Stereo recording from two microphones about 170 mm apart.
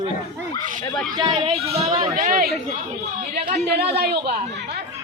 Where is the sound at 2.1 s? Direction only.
50° right (ahead or behind).